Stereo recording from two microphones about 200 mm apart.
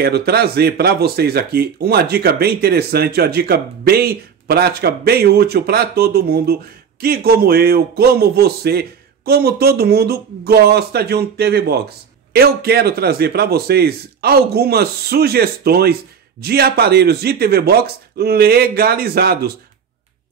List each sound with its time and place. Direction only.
0.0 s speech: 50° right (ahead or behind)